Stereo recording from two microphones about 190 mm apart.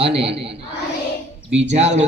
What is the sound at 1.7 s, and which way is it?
Speech, 35° right (ahead or behind).